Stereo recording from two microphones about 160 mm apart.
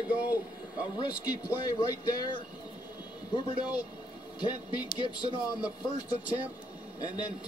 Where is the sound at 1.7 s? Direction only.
25° left (ahead or behind).